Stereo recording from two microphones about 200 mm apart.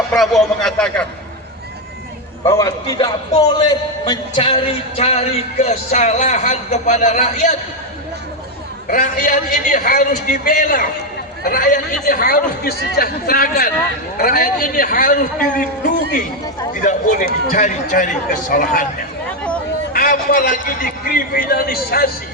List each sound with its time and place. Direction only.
0.1 s speech: centre (ahead or behind)
2.5 s a man's voice: 15° left (ahead or behind); by 7.5 s 35° left (ahead or behind)
8.9 s a man's voice: 45° left (ahead or behind)
19.9 s a man's voice: 45° left (ahead or behind)